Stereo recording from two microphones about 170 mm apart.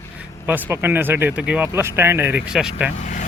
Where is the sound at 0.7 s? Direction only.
10° right (ahead or behind).